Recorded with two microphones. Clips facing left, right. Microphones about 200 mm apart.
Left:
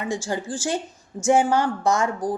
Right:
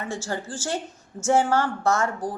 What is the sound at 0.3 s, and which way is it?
A woman's voice, 15° left (ahead or behind).